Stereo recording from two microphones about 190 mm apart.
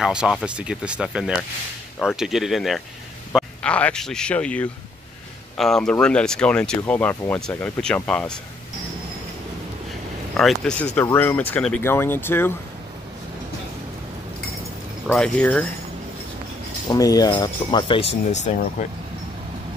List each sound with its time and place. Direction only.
0.0 s speech: 5° right (ahead or behind)
10.3 s speech: centre (ahead or behind)
15.0 s speech: 5° left (ahead or behind)
16.9 s speech: 20° left (ahead or behind); by 18.9 s 40° left (ahead or behind)